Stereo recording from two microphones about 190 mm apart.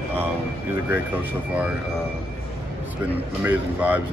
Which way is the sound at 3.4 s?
10° right (ahead or behind).